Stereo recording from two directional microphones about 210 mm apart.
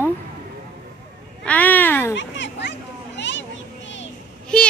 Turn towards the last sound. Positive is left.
turn(degrees=5)  # may be behind; listen again after turning